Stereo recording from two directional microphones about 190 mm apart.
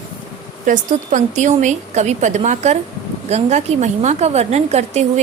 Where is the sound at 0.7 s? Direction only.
45° right (ahead or behind).